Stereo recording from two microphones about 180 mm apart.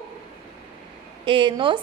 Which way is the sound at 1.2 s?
30° right (ahead or behind).